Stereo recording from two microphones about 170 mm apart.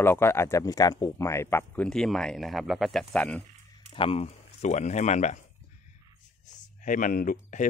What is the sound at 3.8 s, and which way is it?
Speech, 35° left (ahead or behind).